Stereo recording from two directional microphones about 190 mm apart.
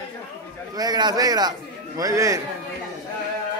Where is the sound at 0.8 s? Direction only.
20° right (ahead or behind).